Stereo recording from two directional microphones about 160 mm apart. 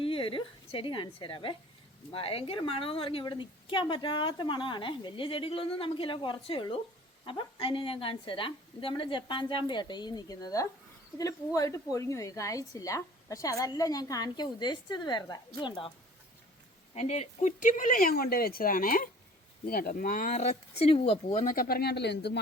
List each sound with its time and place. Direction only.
0.0 s a woman's voice: 35° left (ahead or behind)
16.9 s speech: 40° left (ahead or behind)
21.4 s speech: 60° left (ahead or behind); by 22.3 s 90° left